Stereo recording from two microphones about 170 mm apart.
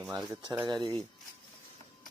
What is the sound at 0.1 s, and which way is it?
Speech, 20° right (ahead or behind).